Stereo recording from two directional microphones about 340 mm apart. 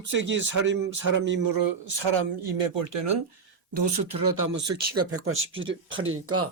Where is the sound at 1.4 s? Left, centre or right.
Right.